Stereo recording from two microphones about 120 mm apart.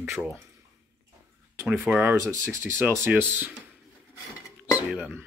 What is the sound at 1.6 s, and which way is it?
Speech, 15° right (ahead or behind).